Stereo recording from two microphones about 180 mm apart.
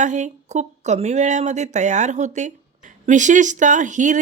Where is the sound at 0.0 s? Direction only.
40° right (ahead or behind).